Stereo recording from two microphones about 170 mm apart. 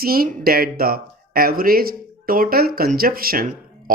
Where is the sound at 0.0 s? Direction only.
60° right (ahead or behind).